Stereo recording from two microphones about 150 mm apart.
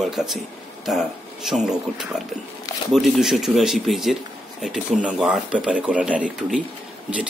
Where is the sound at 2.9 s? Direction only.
Centre (ahead or behind).